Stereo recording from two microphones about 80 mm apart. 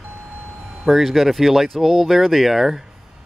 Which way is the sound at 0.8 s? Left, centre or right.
Centre.